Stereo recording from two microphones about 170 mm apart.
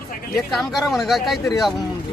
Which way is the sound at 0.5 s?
Centre (ahead or behind).